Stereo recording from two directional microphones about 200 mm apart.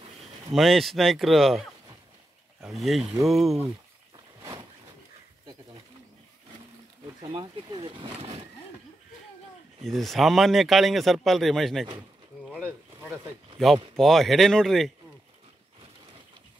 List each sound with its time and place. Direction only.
0.5 s a man's voice: centre (ahead or behind)
4.4 s a sound: 20° right (ahead or behind)
7.2 s speech: 25° right (ahead or behind)
9.8 s a man's voice: centre (ahead or behind)
12.6 s a sound: 10° right (ahead or behind)
13.6 s a man's voice: centre (ahead or behind)